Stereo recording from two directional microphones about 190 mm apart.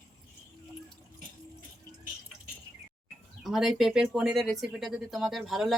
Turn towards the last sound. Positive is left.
turn(degrees=0)  # may be behind; listen again after turning